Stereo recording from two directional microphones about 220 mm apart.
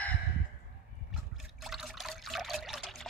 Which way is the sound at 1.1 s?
Centre (ahead or behind).